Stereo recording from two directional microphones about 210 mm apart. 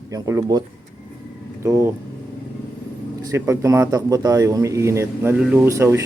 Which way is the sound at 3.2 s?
15° right (ahead or behind).